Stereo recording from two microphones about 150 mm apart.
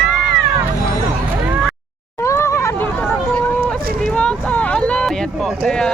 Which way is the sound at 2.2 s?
20° left (ahead or behind).